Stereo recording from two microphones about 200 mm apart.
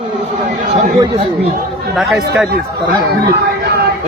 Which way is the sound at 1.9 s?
Centre (ahead or behind).